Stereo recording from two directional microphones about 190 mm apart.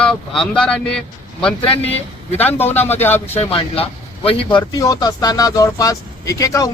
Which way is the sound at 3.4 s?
30° left (ahead or behind).